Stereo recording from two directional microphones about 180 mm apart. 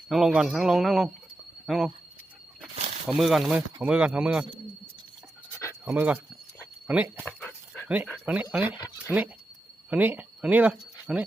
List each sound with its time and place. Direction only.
0.1 s speech: centre (ahead or behind)
3.1 s speech: centre (ahead or behind)
5.5 s a sound: 15° left (ahead or behind)
5.8 s speech: 10° right (ahead or behind)
7.3 s dog: 5° left (ahead or behind)
8.2 s speech: 10° right (ahead or behind)